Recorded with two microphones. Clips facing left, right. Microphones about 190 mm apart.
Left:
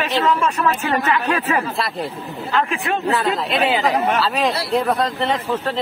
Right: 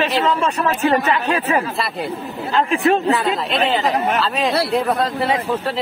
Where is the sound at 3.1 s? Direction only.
20° right (ahead or behind).